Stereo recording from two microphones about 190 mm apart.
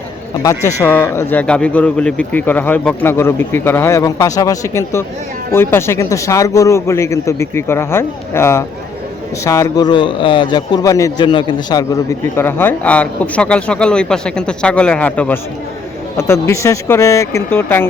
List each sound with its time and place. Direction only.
0.8 s a man's voice: 10° left (ahead or behind)
12.4 s speech: 10° left (ahead or behind)